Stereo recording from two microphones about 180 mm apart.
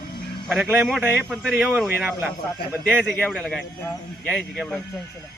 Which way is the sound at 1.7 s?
10° right (ahead or behind).